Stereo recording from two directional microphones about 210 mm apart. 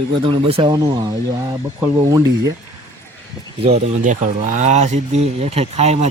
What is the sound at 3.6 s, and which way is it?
Speech, 30° right (ahead or behind).